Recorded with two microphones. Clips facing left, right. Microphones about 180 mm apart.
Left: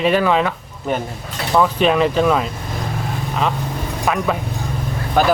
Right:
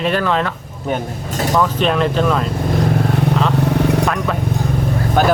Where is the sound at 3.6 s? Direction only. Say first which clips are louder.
Right 10 dB; 70° right (ahead or behind).